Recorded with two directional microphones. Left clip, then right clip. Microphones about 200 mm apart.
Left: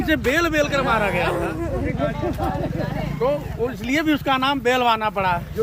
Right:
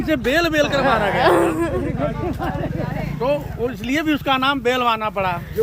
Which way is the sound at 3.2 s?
55° right (ahead or behind).